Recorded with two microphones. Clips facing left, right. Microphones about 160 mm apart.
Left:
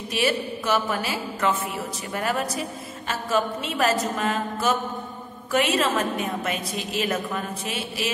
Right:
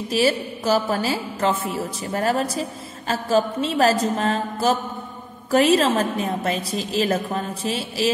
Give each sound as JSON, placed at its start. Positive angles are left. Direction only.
{"t": 0.1, "sound": "a woman's voice", "side_deg": -35}